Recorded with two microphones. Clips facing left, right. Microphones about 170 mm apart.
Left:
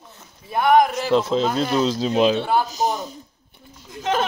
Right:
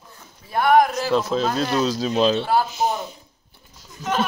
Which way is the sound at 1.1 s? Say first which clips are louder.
Left 2 dB; 25° left (ahead or behind).